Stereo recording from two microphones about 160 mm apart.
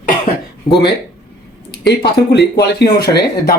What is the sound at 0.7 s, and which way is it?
Speech, 35° left (ahead or behind).